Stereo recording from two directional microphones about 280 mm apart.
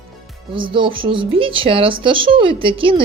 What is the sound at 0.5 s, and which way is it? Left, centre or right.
Speech, centre.